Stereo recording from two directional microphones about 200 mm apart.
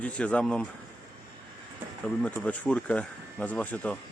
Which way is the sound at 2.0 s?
5° left (ahead or behind).